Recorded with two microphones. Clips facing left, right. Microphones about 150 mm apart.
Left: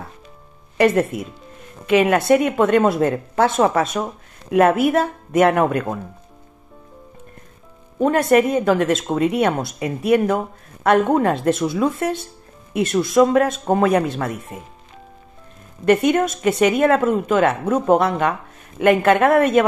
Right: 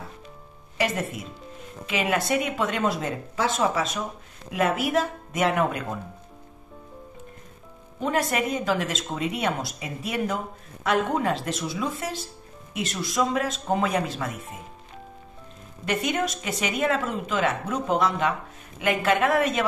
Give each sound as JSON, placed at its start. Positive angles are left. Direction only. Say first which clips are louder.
{"t": 0.7, "sound": "speech", "louder": "left 11 dB", "side_deg": 55}
{"t": 8.0, "sound": "speech", "louder": "left 10 dB", "side_deg": 55}
{"t": 15.8, "sound": "speech", "louder": "left 10 dB", "side_deg": 55}